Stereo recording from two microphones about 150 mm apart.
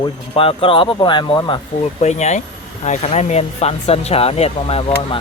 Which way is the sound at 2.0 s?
50° left (ahead or behind).